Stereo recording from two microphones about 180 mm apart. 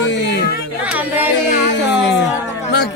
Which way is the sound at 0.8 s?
10° right (ahead or behind).